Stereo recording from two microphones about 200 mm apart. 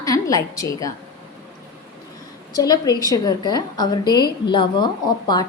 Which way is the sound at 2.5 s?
20° left (ahead or behind).